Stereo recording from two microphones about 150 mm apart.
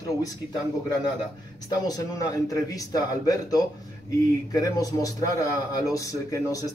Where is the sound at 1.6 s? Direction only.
25° left (ahead or behind).